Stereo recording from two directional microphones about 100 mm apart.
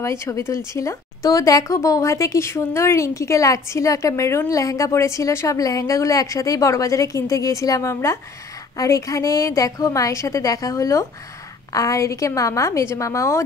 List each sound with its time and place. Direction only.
0.0 s a woman's voice: 30° left (ahead or behind)